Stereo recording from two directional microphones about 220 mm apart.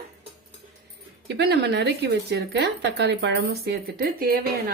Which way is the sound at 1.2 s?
50° right (ahead or behind).